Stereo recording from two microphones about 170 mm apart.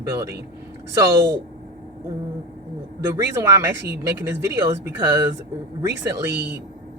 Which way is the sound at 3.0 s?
15° right (ahead or behind).